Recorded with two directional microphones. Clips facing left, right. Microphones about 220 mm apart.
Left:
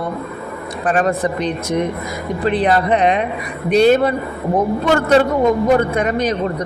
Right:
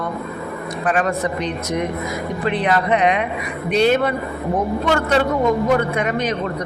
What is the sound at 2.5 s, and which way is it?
A man's voice, 35° left (ahead or behind).